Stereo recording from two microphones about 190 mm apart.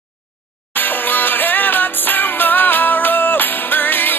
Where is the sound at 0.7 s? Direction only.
10° left (ahead or behind).